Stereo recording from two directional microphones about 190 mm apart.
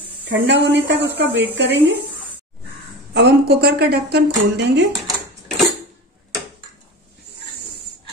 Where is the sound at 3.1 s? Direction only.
55° right (ahead or behind).